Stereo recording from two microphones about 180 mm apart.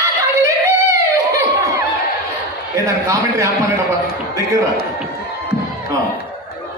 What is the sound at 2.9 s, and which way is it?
Speech, 20° right (ahead or behind).